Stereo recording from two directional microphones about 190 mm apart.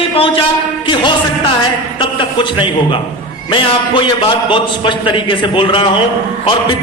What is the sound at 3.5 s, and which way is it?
A man's voice, 25° left (ahead or behind).